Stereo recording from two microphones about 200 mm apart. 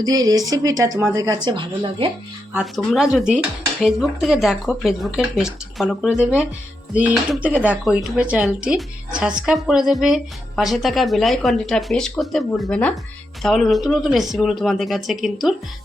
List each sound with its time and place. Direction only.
0.0 s speech: 20° right (ahead or behind)
2.5 s speech: 5° right (ahead or behind)